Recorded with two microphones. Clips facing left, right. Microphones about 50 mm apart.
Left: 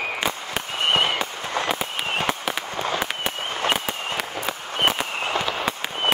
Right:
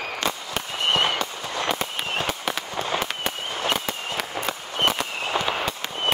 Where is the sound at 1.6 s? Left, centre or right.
Centre.